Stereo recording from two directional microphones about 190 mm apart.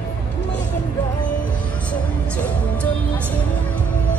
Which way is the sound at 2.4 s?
5° left (ahead or behind).